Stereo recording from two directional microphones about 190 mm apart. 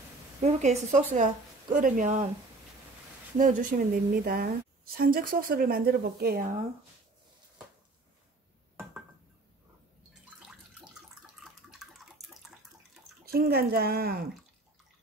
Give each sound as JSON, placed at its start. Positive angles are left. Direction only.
{"t": 0.4, "sound": "a woman's voice", "side_deg": -35}
{"t": 3.3, "sound": "a woman's voice", "side_deg": -45}
{"t": 10.4, "sound": "water", "side_deg": -5}
{"t": 13.2, "sound": "speech", "side_deg": -55}